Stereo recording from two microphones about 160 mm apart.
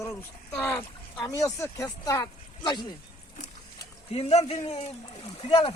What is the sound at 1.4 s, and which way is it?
Speech, 20° left (ahead or behind).